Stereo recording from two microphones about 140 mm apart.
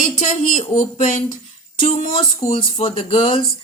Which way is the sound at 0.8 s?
65° left (ahead or behind).